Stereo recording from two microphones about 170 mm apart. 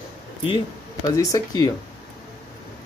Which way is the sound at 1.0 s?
20° left (ahead or behind).